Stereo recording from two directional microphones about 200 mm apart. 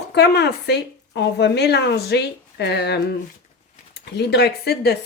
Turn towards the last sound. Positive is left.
turn(degrees=55)  # may be behind; listen again after turning